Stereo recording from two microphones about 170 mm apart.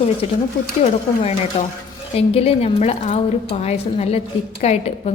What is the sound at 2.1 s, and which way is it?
A woman's voice, 35° left (ahead or behind).